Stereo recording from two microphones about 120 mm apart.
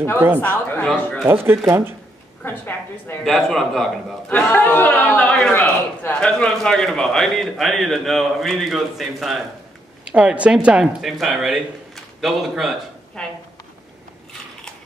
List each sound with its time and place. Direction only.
0.4 s chatter: 15° left (ahead or behind)
1.2 s speech: 20° right (ahead or behind)
2.4 s a woman's voice: 15° left (ahead or behind)
3.3 s a man's voice: centre (ahead or behind)
4.3 s a man's voice: 15° left (ahead or behind)